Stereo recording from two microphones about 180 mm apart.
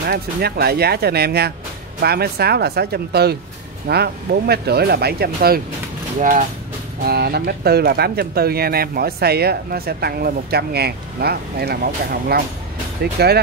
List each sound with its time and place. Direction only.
0.1 s speech: 60° right (ahead or behind)
7.1 s speech: 60° right (ahead or behind)